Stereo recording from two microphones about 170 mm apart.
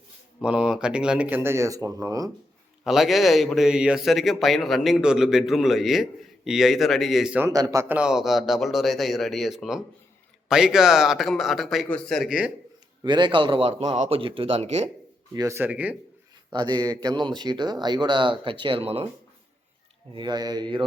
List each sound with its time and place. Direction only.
0.4 s speech: 5° right (ahead or behind)
2.8 s a man's voice: centre (ahead or behind)
7.5 s a man's voice: 20° right (ahead or behind); by 12.5 s centre (ahead or behind)
13.0 s speech: 25° right (ahead or behind); by 14.2 s 45° right (ahead or behind)
14.2 s speech: 30° right (ahead or behind)
15.4 s speech: 15° right (ahead or behind)
16.5 s speech: 25° right (ahead or behind)
20.1 s speech: 25° right (ahead or behind)